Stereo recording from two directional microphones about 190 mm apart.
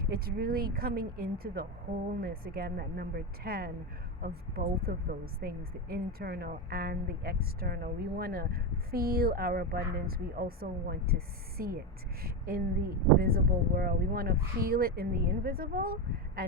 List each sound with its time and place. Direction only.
0.0 s a woman's voice: 55° right (ahead or behind)